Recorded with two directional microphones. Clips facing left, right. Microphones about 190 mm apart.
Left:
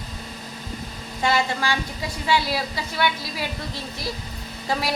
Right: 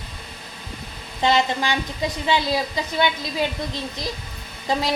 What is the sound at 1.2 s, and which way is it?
A woman's voice, 20° right (ahead or behind).